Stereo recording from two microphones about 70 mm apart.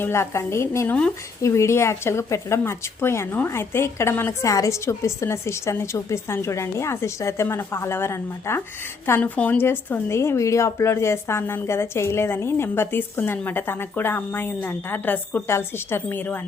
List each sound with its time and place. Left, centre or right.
0.0 s speech: left
4.4 s a woman's voice: left
9.2 s speech: left
15.4 s speech: left